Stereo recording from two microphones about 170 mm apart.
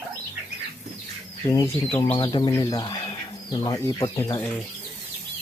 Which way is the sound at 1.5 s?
20° left (ahead or behind).